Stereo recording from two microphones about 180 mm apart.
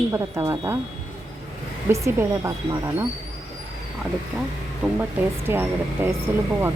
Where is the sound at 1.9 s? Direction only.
15° right (ahead or behind).